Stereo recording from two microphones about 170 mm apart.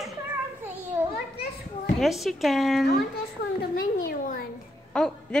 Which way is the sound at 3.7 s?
55° left (ahead or behind).